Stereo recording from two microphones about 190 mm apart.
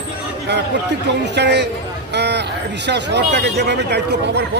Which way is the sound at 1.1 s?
65° right (ahead or behind).